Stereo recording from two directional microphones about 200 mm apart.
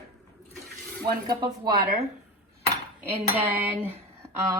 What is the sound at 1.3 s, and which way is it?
Speech, 20° right (ahead or behind).